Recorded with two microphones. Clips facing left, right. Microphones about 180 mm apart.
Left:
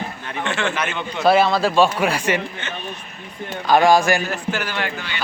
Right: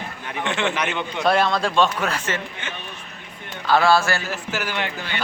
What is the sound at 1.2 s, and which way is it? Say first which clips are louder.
Speech: left 4 dB; 5° left (ahead or behind).